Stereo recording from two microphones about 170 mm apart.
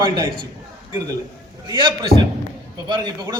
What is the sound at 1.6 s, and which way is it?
A man's voice, 25° right (ahead or behind).